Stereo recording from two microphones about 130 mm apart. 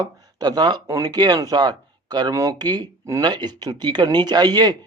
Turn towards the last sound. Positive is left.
turn(degrees=-30)  # may be behind; listen again after turning